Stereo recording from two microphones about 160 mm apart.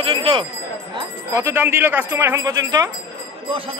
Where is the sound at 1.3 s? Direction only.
20° right (ahead or behind).